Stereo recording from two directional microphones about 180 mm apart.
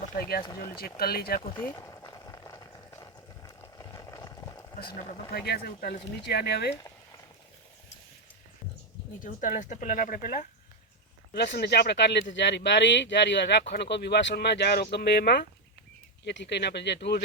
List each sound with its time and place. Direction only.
0.1 s speech: 55° left (ahead or behind)
0.4 s speech: 20° left (ahead or behind)
0.8 s speech: 55° left (ahead or behind)
1.8 s a sound: 15° left (ahead or behind)
5.3 s speech: 60° left (ahead or behind)
9.2 s speech: 45° left (ahead or behind)
11.3 s speech: 60° left (ahead or behind)